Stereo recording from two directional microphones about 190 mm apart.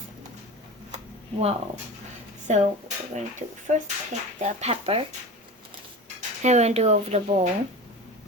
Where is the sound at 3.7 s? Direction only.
40° right (ahead or behind).